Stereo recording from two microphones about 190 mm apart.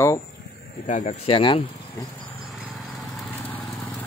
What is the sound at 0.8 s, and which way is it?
Speech, 40° left (ahead or behind).